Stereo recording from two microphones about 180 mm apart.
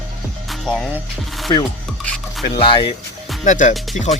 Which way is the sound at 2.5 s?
25° left (ahead or behind).